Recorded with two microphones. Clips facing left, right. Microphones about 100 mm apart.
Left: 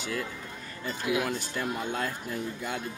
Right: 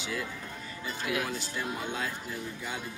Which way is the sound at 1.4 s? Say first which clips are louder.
Left 3 dB; 50° left (ahead or behind).